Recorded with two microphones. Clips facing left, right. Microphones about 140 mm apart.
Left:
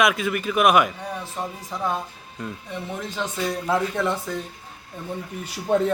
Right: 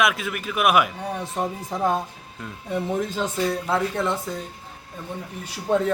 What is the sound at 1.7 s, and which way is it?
Speech, 40° right (ahead or behind).